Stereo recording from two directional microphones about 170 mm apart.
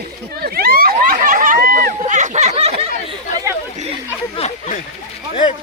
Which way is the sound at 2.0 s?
45° right (ahead or behind).